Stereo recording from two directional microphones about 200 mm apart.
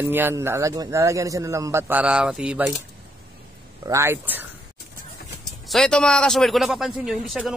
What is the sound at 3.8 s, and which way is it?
Speech, 15° right (ahead or behind).